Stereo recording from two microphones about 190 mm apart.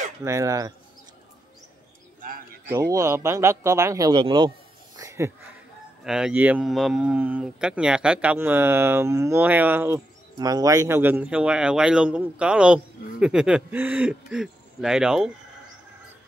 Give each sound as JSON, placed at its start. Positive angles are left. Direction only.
{"t": 0.2, "sound": "speech", "side_deg": -15}
{"t": 2.7, "sound": "speech", "side_deg": -15}
{"t": 4.9, "sound": "a sound", "side_deg": -15}
{"t": 6.0, "sound": "speech", "side_deg": -5}